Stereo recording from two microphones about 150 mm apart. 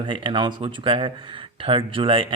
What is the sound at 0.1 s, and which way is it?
Speech, 30° right (ahead or behind).